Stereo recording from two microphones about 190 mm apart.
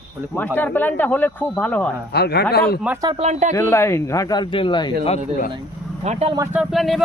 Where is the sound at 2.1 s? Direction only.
60° left (ahead or behind).